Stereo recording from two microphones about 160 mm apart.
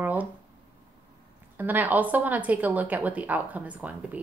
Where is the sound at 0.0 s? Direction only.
10° right (ahead or behind).